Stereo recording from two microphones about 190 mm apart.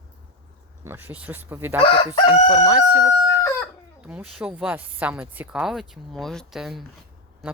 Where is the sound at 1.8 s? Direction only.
25° left (ahead or behind).